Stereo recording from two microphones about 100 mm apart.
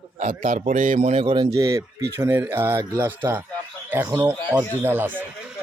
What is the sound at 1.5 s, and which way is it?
Speech, 35° right (ahead or behind).